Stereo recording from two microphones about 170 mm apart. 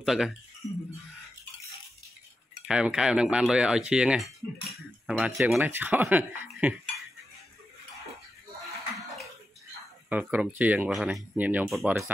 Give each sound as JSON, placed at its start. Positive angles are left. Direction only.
{"t": 0.0, "sound": "speech", "side_deg": 0}
{"t": 0.6, "sound": "a sound", "side_deg": 40}
{"t": 2.7, "sound": "speech", "side_deg": -5}
{"t": 8.9, "sound": "bathtub", "side_deg": 0}
{"t": 10.0, "sound": "speech", "side_deg": -10}